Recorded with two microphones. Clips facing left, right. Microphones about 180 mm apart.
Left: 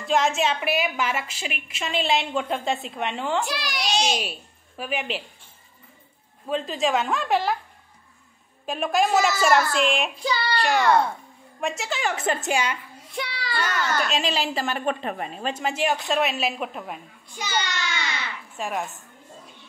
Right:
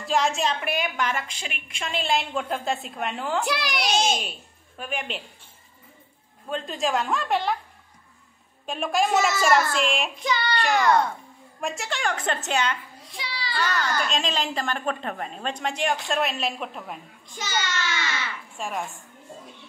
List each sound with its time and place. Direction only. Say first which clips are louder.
0.0 s a woman's voice: left 2 dB; centre (ahead or behind)
3.4 s a child's voice: right 2 dB; 55° right (ahead or behind)
4.2 s a woman's voice: left 3 dB; 5° left (ahead or behind)
6.5 s a woman's voice: left 3 dB; centre (ahead or behind)
8.6 s a woman's voice: left 2 dB; centre (ahead or behind)
10.1 s child singing: even; 30° left (ahead or behind)
10.6 s a child's voice: left 1 dB; centre (ahead or behind)
13.2 s a child's voice: left 3 dB; 60° left (ahead or behind)
13.6 s a woman's voice: left 1 dB; 5° left (ahead or behind)
17.7 s baby cry: right 1 dB; 35° left (ahead or behind)
18.6 s a woman's voice: left 2 dB; centre (ahead or behind)